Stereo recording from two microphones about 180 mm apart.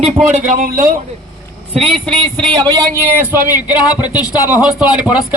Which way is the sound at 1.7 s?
30° right (ahead or behind).